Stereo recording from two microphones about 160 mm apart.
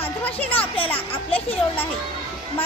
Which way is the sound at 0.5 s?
35° left (ahead or behind).